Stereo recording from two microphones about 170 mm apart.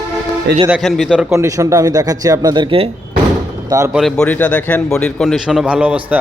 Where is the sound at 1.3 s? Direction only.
20° right (ahead or behind).